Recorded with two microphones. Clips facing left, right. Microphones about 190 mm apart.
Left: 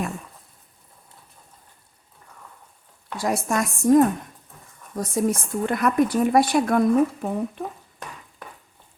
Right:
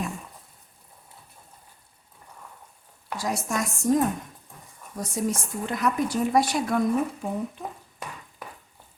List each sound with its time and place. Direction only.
3.2 s speech: 55° left (ahead or behind)